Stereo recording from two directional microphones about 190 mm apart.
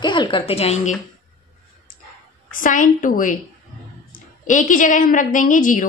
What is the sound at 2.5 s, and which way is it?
A woman's voice, 45° left (ahead or behind).